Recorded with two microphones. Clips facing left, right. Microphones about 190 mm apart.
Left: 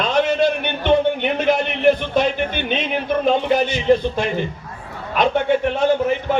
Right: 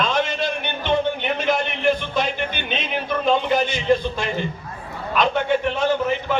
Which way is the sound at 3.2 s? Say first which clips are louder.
Left 1 dB; 50° left (ahead or behind).